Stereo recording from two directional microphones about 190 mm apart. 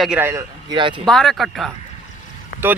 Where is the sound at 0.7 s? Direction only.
25° right (ahead or behind).